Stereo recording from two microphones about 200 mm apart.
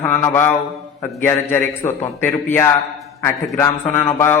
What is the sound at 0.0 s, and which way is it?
A man's voice, 10° left (ahead or behind).